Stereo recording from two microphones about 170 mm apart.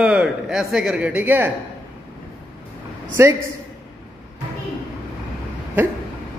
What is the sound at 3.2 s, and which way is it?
Speech, 15° right (ahead or behind).